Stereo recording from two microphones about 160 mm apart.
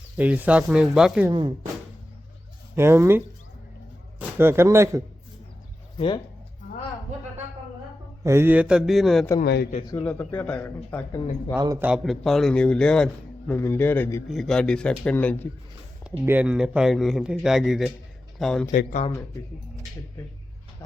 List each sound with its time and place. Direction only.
0.2 s speech: 10° right (ahead or behind)
1.3 s speech: 30° right (ahead or behind)
2.7 s speech: 15° right (ahead or behind)
4.4 s speech: 15° right (ahead or behind)
8.2 s speech: 15° right (ahead or behind); by 9.2 s centre (ahead or behind)
9.4 s a man's voice: 90° left
10.0 s a man's voice: 10° left (ahead or behind)
11.8 s a man's voice: 5° right (ahead or behind); by 14.3 s 15° left (ahead or behind)
14.3 s speech: centre (ahead or behind)
16.0 s speech: 10° right (ahead or behind)
18.7 s speech: 55° left (ahead or behind)